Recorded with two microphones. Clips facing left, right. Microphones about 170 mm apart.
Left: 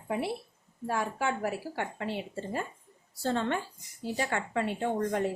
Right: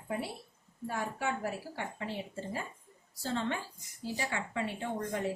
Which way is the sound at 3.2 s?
60° left (ahead or behind).